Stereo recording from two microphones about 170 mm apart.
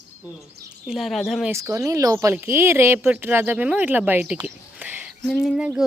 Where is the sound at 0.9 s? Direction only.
Centre (ahead or behind).